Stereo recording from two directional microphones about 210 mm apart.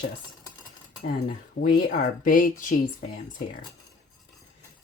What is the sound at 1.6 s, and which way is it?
Speech, 40° left (ahead or behind).